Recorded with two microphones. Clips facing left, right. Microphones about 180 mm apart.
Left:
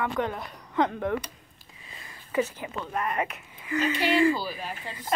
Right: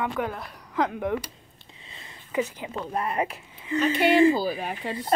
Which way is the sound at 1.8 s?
25° right (ahead or behind).